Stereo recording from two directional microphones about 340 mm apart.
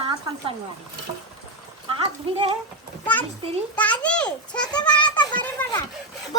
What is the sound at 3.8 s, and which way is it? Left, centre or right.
A child's voice, centre.